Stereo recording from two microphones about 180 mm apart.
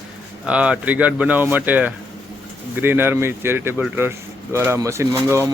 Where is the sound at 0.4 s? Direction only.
5° right (ahead or behind).